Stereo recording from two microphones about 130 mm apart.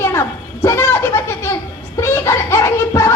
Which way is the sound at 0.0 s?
20° left (ahead or behind).